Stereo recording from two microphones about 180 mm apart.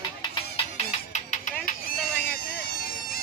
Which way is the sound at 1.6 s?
55° left (ahead or behind).